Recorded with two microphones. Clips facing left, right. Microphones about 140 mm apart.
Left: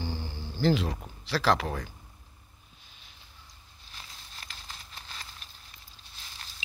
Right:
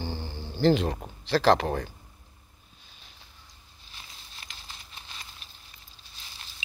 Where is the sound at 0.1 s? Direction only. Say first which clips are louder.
Right 1 dB; 10° left (ahead or behind).